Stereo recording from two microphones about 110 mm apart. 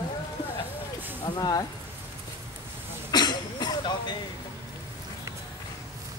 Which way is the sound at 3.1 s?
40° left (ahead or behind).